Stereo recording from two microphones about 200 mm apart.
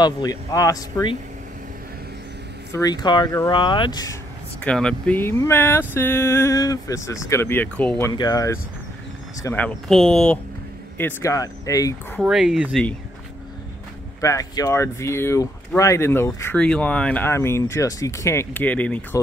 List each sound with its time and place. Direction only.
0.0 s speech: 20° left (ahead or behind)
2.7 s speech: 20° left (ahead or behind)
4.6 s speech: 5° left (ahead or behind)
8.1 s speech: 20° left (ahead or behind)
12.2 s speech: 5° right (ahead or behind)
14.2 s speech: 15° left (ahead or behind)